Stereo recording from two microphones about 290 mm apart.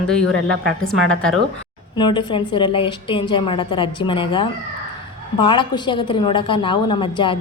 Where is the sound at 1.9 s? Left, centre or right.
Centre.